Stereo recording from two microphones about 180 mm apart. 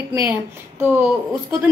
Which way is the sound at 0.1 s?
15° right (ahead or behind).